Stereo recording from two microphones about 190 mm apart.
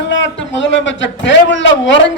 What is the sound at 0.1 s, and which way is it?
A man's voice, 75° left (ahead or behind).